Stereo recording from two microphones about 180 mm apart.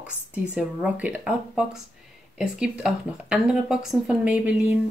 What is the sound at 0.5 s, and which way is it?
Speech, 10° right (ahead or behind).